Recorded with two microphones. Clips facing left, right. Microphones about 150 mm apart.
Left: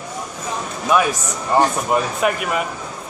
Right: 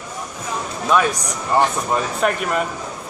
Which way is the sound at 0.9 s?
10° left (ahead or behind).